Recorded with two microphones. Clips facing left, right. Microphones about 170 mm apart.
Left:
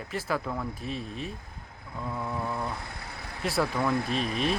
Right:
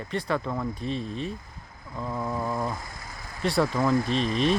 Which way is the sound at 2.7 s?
65° left (ahead or behind).